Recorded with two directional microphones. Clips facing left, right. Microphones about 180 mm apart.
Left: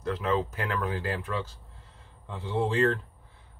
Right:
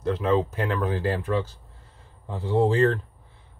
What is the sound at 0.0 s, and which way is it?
Speech, 25° right (ahead or behind).